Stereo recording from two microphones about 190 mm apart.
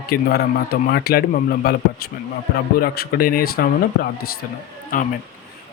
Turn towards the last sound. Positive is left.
turn(degrees=45)  # may be behind; listen again after turning